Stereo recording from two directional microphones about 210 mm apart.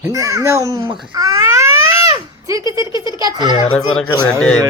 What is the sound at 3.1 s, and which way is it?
Speech, 20° right (ahead or behind).